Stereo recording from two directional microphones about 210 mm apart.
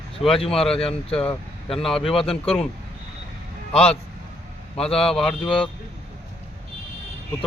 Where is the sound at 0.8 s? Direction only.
25° left (ahead or behind).